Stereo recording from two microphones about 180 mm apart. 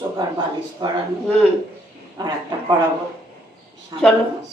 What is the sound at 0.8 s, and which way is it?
Speech, 25° right (ahead or behind).